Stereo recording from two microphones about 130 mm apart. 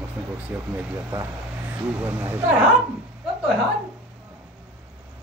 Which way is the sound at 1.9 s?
10° right (ahead or behind).